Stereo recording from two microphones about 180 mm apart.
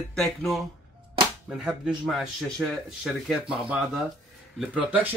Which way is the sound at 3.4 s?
30° right (ahead or behind).